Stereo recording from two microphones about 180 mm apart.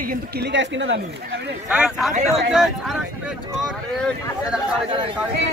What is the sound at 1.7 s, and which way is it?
Speech, 5° right (ahead or behind).